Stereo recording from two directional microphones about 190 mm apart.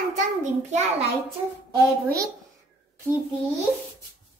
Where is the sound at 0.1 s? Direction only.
40° right (ahead or behind).